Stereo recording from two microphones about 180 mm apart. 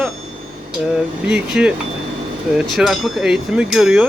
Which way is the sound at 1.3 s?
5° right (ahead or behind).